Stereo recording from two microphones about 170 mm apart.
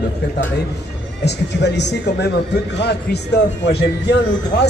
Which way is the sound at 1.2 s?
85° left.